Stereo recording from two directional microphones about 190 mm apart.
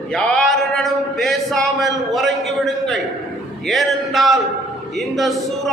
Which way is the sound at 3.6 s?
Centre (ahead or behind).